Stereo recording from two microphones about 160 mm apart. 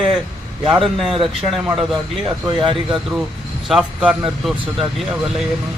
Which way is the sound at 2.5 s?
30° right (ahead or behind).